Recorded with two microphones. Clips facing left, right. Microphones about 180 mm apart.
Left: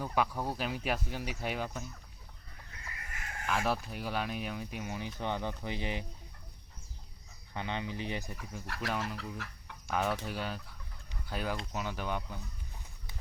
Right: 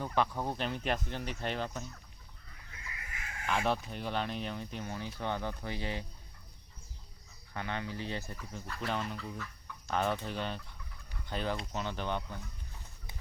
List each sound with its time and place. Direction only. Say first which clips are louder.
0.0 s speech: even; 5° left (ahead or behind)
2.8 s a sound: left 1 dB; 45° left (ahead or behind)
3.4 s speech: right 1 dB; centre (ahead or behind); by 6.1 s 15° left (ahead or behind)
7.5 s speech: left 1 dB; 20° left (ahead or behind)
8.6 s speech: left 1 dB; 80° left
8.9 s speech: even; 5° left (ahead or behind)
9.1 s speech: even; 75° left (ahead or behind)
9.9 s speech: even; 5° left (ahead or behind)